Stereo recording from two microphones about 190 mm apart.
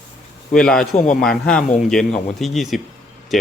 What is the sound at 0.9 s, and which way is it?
Speech, 40° left (ahead or behind).